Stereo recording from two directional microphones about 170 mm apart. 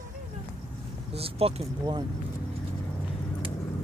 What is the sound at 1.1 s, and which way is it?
Speech, 35° right (ahead or behind).